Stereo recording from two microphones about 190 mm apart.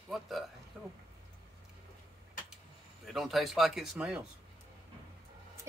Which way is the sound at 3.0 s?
Centre (ahead or behind).